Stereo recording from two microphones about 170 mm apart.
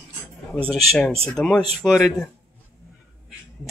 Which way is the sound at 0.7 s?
Centre (ahead or behind).